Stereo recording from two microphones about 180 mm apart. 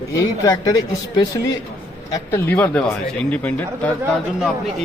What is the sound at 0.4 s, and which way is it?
Speech, 20° left (ahead or behind).